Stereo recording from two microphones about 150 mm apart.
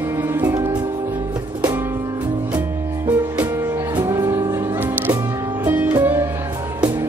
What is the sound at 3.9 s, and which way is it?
Music, 20° right (ahead or behind).